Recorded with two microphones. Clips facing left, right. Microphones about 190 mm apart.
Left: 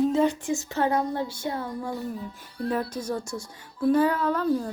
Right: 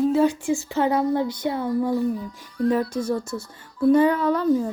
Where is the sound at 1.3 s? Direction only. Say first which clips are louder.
Right 7 dB; 20° right (ahead or behind).